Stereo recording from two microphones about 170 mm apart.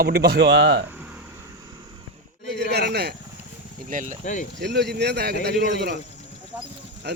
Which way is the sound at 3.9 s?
50° right (ahead or behind).